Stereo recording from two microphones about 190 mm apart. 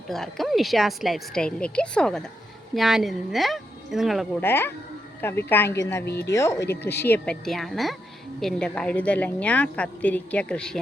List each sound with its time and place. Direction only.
0.1 s a woman's voice: centre (ahead or behind)
4.4 s a woman's voice: 10° left (ahead or behind)
6.1 s speech: 60° left (ahead or behind)
6.3 s a woman's voice: 15° left (ahead or behind)